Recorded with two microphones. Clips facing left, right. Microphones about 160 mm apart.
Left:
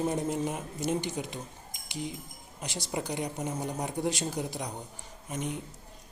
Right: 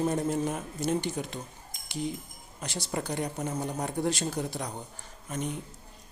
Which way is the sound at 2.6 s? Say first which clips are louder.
Right 1 dB; 15° left (ahead or behind).